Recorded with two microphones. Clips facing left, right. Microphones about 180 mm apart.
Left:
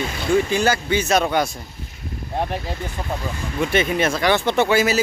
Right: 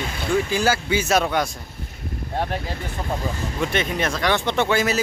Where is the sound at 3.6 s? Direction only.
5° left (ahead or behind).